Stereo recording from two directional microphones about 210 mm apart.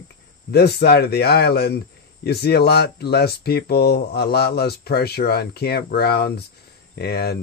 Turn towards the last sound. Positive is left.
turn(degrees=50)  # may be behind; listen again after turning